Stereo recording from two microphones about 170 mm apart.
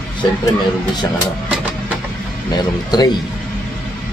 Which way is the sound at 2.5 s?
25° left (ahead or behind).